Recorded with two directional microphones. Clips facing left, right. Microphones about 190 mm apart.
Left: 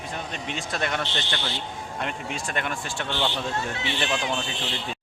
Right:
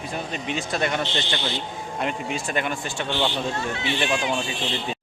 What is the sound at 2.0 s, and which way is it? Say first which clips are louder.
Speech: right 4 dB; centre (ahead or behind).